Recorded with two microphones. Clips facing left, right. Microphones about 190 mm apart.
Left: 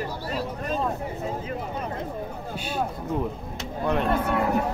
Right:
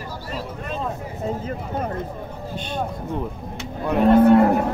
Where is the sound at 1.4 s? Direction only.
50° right (ahead or behind).